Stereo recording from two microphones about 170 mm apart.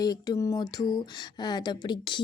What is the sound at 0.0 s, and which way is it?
Speech, 20° left (ahead or behind).